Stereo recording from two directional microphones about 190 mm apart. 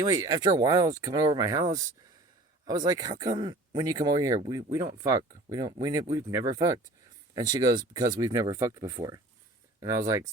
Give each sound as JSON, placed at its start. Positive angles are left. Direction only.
{"t": 0.0, "sound": "speech", "side_deg": -20}